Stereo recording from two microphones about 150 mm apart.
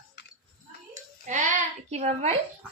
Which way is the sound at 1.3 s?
50° right (ahead or behind).